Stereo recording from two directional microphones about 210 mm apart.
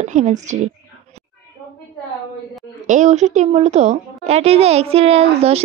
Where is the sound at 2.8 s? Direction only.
35° right (ahead or behind).